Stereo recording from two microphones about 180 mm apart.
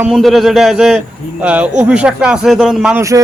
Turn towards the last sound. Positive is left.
turn(degrees=-20)  # may be behind; listen again after turning